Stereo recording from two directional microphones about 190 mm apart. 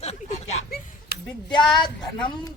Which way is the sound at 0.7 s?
55° left (ahead or behind).